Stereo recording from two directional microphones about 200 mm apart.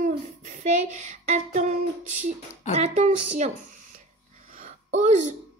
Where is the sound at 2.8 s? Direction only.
35° right (ahead or behind).